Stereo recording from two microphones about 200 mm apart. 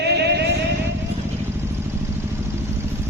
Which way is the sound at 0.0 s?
55° right (ahead or behind).